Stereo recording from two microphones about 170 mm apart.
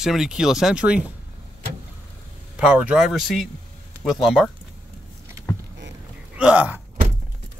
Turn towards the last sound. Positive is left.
turn(degrees=-10)  # may be behind; listen again after turning